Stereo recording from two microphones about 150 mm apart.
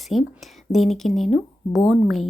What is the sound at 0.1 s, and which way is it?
Speech, centre (ahead or behind).